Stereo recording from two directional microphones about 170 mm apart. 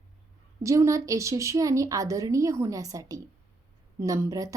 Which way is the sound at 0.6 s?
20° right (ahead or behind).